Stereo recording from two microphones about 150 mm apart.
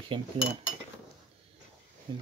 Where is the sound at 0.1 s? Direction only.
35° right (ahead or behind).